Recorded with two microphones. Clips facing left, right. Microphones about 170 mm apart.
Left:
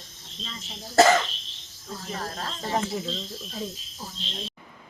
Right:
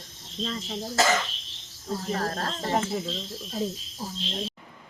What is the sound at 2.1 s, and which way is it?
Speech, 50° right (ahead or behind).